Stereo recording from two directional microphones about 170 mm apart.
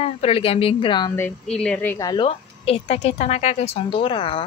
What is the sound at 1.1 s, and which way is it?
A woman's voice, 10° left (ahead or behind).